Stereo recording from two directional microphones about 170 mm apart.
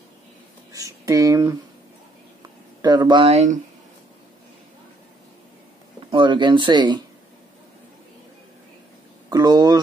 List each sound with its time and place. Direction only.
0.7 s speech: 20° right (ahead or behind)
2.8 s speech: 25° right (ahead or behind)
6.1 s speech: 25° right (ahead or behind)
9.3 s a sound: 25° right (ahead or behind)